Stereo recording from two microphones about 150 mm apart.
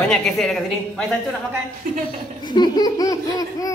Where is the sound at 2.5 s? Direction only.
25° left (ahead or behind).